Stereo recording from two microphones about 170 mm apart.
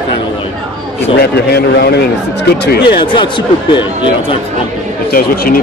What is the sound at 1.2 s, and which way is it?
A man's voice, 70° left (ahead or behind).